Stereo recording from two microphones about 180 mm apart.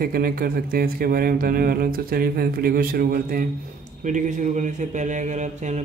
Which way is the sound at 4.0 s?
45° right (ahead or behind).